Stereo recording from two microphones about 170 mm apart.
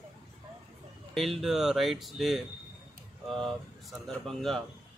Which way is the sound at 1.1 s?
Centre (ahead or behind).